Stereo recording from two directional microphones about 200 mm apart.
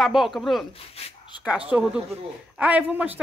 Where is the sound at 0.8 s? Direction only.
30° left (ahead or behind).